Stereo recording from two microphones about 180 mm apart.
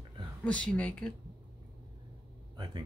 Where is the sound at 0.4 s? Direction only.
5° left (ahead or behind).